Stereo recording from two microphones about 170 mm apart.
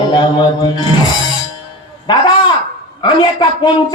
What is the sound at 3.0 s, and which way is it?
Speech, 25° left (ahead or behind).